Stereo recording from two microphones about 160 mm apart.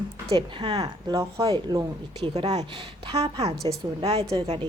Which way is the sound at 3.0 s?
20° right (ahead or behind).